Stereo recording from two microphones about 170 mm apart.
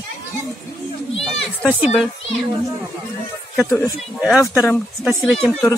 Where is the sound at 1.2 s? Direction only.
Centre (ahead or behind).